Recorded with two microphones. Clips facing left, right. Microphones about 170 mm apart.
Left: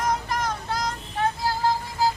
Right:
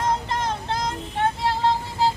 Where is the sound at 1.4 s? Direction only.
25° right (ahead or behind).